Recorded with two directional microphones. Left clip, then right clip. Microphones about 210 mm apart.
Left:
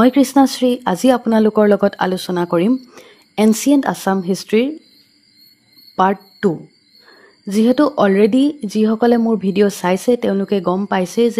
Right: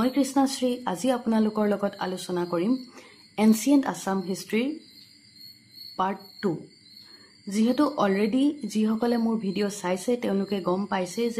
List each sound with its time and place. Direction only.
0.0 s speech: 40° left (ahead or behind)
2.7 s speech: 35° left (ahead or behind)
5.9 s speech: 40° left (ahead or behind)